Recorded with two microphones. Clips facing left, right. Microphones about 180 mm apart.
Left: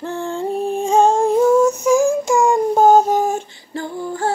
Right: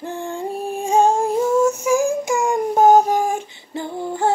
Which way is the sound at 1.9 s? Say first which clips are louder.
Left 3 dB; 15° right (ahead or behind).